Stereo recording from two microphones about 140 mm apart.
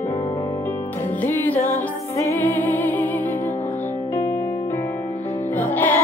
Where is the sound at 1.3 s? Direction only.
15° left (ahead or behind).